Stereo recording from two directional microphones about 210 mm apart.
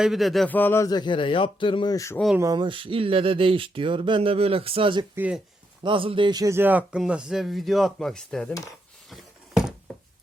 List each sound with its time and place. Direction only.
0.0 s speech: centre (ahead or behind)
2.4 s speech: 20° right (ahead or behind)
5.1 s speech: 5° right (ahead or behind)
5.8 s a man's voice: 25° right (ahead or behind); by 8.5 s 5° left (ahead or behind)
9.0 s a sound: centre (ahead or behind)